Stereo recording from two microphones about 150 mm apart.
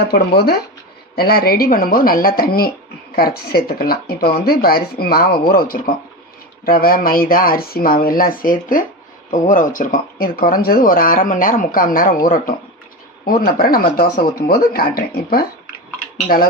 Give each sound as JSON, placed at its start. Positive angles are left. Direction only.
{"t": 0.1, "sound": "speech", "side_deg": 90}